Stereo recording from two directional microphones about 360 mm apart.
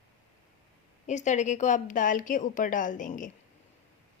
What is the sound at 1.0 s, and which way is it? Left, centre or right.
A woman's voice, centre.